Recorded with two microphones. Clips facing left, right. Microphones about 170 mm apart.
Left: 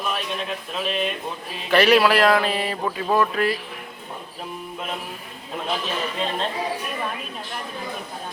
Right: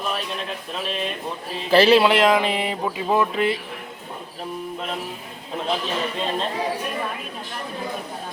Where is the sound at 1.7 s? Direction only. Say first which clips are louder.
Right 2 dB; 30° right (ahead or behind).